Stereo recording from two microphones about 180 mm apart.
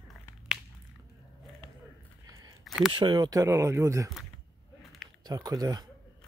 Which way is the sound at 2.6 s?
Centre (ahead or behind).